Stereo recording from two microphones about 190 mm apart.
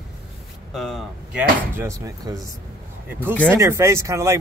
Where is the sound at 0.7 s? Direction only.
Centre (ahead or behind).